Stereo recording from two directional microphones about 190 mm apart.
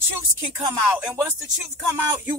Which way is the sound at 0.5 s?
10° right (ahead or behind).